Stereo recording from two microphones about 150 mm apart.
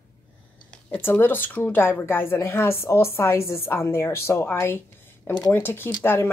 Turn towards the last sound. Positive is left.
turn(degrees=15)  # may be behind; listen again after turning